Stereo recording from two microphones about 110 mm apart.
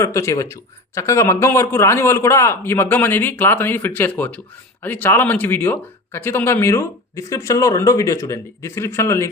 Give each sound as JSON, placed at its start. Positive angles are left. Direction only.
{"t": 0.0, "sound": "speech", "side_deg": 25}